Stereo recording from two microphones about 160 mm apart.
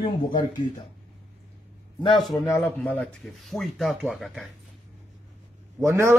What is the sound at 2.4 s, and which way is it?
Speech, 15° left (ahead or behind).